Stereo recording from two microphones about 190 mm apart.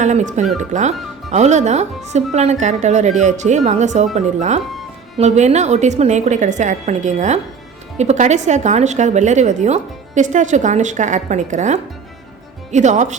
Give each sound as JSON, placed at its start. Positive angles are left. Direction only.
{"t": 0.0, "sound": "a woman's voice", "side_deg": -40}